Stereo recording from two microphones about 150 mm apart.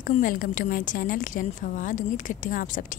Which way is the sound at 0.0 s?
65° left (ahead or behind).